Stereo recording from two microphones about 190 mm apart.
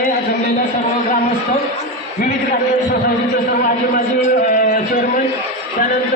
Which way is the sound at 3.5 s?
50° left (ahead or behind).